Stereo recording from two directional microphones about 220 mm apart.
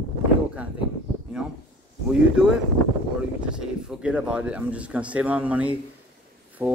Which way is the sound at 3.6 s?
5° right (ahead or behind).